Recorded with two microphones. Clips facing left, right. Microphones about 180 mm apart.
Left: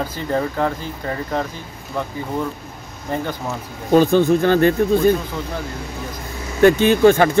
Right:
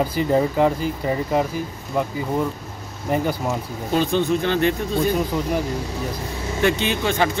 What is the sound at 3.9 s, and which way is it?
Speech, 45° left (ahead or behind).